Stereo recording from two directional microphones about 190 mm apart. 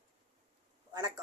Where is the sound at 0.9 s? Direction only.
20° right (ahead or behind).